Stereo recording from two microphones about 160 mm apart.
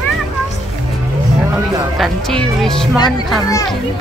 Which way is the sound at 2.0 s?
5° left (ahead or behind).